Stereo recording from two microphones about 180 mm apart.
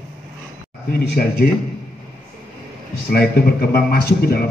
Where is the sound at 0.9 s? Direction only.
60° left (ahead or behind).